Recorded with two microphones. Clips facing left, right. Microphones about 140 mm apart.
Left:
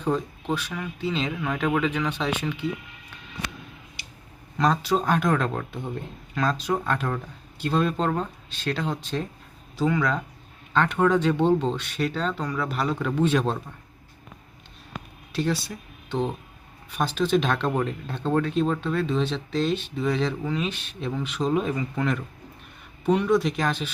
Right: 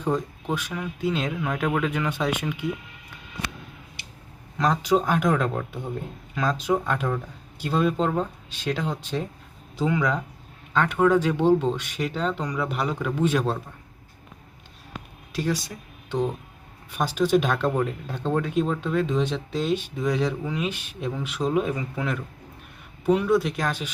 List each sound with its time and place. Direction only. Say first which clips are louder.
0.4 s speech: even; 10° right (ahead or behind)
4.7 s speech: right 4 dB; 15° right (ahead or behind)
15.3 s a sound: left 1 dB; 10° right (ahead or behind)
16.9 s speech: right 1 dB; 10° right (ahead or behind)